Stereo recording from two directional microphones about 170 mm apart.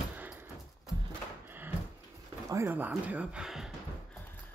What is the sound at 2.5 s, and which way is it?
Speech, 15° right (ahead or behind).